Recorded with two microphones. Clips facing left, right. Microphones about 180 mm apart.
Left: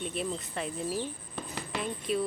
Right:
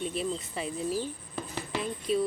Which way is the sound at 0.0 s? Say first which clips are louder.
Right 2 dB; centre (ahead or behind).